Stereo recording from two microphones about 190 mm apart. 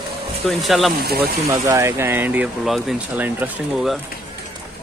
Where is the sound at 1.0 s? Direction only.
55° right (ahead or behind).